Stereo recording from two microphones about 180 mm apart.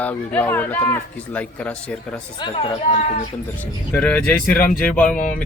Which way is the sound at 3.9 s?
5° left (ahead or behind).